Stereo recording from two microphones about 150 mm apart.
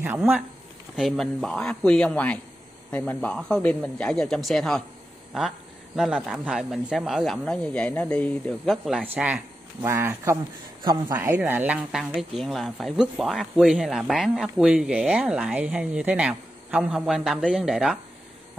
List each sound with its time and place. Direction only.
0.0 s speech: 10° right (ahead or behind)
0.9 s speech: centre (ahead or behind)
5.9 s speech: centre (ahead or behind)
9.0 s speech: 10° right (ahead or behind)
11.1 s speech: 10° right (ahead or behind)